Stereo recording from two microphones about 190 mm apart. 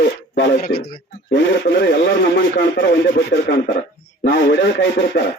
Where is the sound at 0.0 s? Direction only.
70° left (ahead or behind).